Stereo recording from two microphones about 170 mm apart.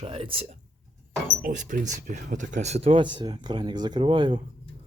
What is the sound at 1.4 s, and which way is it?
Speech, 45° right (ahead or behind).